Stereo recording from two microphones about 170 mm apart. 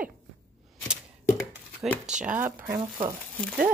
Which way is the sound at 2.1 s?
45° right (ahead or behind).